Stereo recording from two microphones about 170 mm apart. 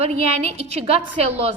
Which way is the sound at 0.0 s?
40° right (ahead or behind).